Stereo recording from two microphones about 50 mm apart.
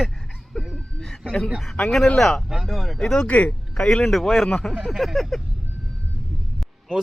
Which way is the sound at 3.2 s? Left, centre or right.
Left.